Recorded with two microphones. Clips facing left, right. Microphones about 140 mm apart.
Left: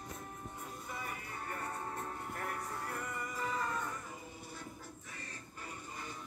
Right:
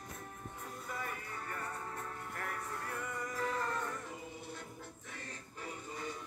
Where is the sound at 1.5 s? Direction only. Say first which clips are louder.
Left 2 dB; 30° left (ahead or behind).